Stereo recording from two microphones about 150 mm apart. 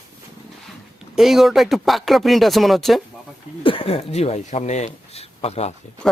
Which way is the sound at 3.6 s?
40° left (ahead or behind).